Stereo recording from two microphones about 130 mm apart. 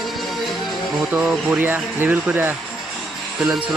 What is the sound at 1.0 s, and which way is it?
Speech, 5° right (ahead or behind).